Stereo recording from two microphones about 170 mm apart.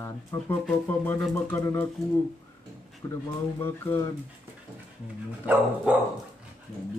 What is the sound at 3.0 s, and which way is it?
A man's voice, 20° left (ahead or behind).